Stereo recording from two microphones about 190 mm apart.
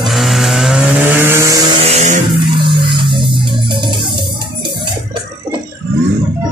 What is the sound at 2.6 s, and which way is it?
Music, 25° right (ahead or behind).